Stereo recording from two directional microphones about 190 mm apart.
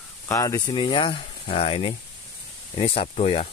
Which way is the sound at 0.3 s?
20° left (ahead or behind).